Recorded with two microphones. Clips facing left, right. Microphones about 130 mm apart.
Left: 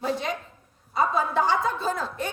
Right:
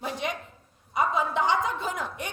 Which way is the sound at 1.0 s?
20° right (ahead or behind).